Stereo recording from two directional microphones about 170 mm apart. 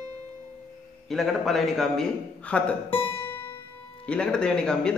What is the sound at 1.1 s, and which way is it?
A man's voice, centre (ahead or behind).